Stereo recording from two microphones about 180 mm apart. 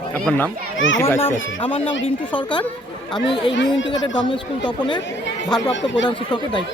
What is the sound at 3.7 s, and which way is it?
Speech, 90° left.